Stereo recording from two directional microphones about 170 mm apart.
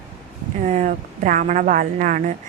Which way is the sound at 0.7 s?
45° right (ahead or behind).